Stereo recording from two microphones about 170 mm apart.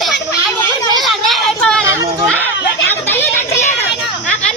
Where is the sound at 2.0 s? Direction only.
15° right (ahead or behind).